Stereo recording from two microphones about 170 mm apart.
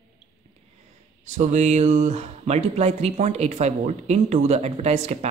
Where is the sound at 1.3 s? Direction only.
45° right (ahead or behind).